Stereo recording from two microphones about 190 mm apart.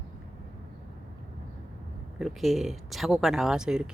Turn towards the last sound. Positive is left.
turn(degrees=-5)  # may be behind; listen again after turning